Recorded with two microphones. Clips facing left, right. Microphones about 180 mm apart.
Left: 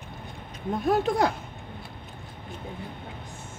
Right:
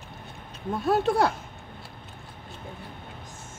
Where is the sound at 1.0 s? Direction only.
65° right (ahead or behind).